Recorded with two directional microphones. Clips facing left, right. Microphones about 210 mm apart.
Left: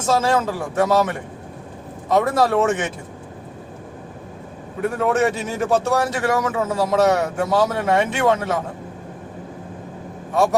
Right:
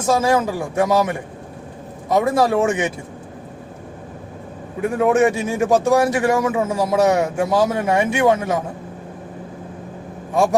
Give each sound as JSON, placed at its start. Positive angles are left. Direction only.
{"t": 0.0, "sound": "a man's voice", "side_deg": -10}
{"t": 4.8, "sound": "a man's voice", "side_deg": -15}